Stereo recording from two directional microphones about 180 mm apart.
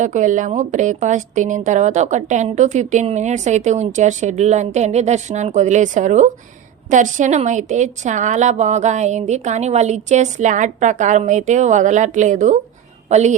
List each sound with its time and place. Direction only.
0.0 s a woman's voice: 45° right (ahead or behind)